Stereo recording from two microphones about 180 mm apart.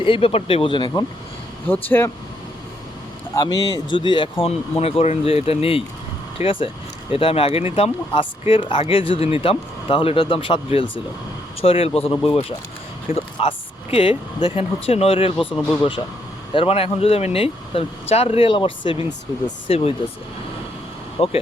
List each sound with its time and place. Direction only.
0.0 s speech: 30° left (ahead or behind)
1.6 s speech: 10° left (ahead or behind)
3.3 s speech: 20° left (ahead or behind)
15.4 s speech: 5° left (ahead or behind)
16.6 s speech: 30° left (ahead or behind)
21.2 s speech: 30° left (ahead or behind)